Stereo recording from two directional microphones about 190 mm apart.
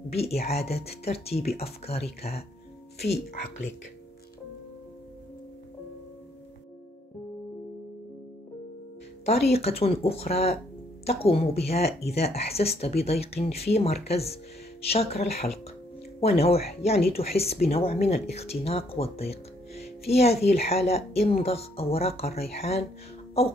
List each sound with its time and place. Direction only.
0.1 s speech: 35° left (ahead or behind)
9.2 s speech: 35° left (ahead or behind)